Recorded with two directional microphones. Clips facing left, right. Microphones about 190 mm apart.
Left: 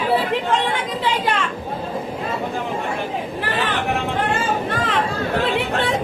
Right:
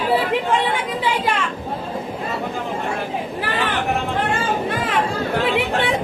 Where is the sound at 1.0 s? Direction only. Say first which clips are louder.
Left 1 dB; 10° right (ahead or behind).